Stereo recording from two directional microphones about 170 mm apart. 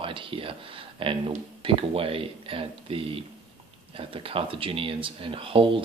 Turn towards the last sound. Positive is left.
turn(degrees=-30)  # may be behind; listen again after turning